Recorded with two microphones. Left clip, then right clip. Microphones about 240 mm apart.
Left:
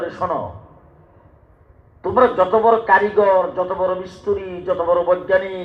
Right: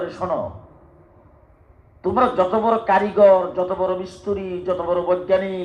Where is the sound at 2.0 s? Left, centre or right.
Right.